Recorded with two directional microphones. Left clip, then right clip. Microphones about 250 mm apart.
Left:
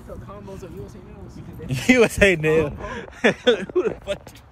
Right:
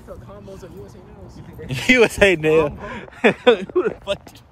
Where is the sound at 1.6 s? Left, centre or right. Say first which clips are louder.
Right 2 dB; centre.